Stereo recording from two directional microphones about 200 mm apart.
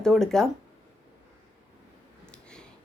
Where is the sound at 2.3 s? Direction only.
5° left (ahead or behind).